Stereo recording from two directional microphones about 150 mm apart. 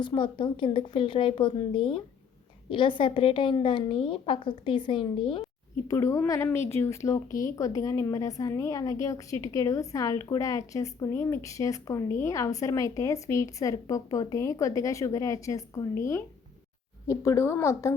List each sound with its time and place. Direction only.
0.0 s a woman's voice: 30° left (ahead or behind)
5.9 s a woman's voice: 20° left (ahead or behind)